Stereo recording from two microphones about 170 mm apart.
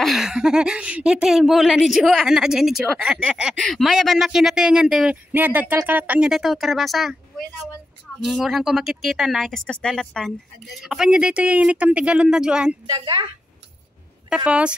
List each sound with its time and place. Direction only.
0.0 s speech: centre (ahead or behind)
12.8 s a woman's voice: 25° right (ahead or behind)
14.3 s a woman's voice: 5° right (ahead or behind)